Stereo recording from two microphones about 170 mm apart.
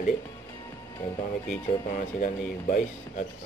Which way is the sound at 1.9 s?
50° left (ahead or behind).